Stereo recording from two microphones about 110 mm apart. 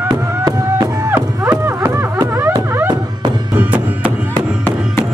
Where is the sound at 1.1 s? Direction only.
15° right (ahead or behind).